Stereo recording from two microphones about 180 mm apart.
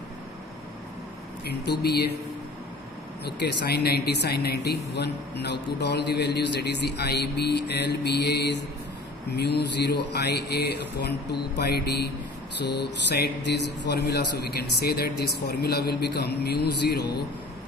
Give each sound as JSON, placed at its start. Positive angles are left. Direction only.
{"t": 1.5, "sound": "a man's voice", "side_deg": 65}
{"t": 3.2, "sound": "a man's voice", "side_deg": 65}